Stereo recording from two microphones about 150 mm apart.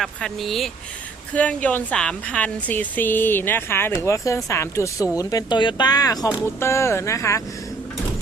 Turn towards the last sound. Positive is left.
turn(degrees=20)  # may be behind; listen again after turning